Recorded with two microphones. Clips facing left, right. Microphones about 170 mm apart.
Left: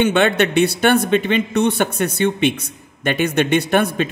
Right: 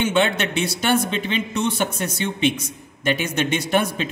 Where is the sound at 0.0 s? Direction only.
60° left (ahead or behind).